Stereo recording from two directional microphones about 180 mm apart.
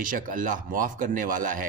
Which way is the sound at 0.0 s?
50° right (ahead or behind).